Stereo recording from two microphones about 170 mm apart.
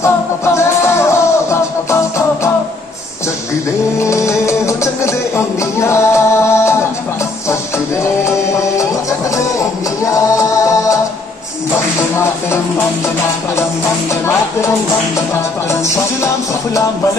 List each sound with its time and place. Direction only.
0.6 s music: 15° left (ahead or behind)
4.0 s music: 15° left (ahead or behind)
9.6 s music: 20° left (ahead or behind)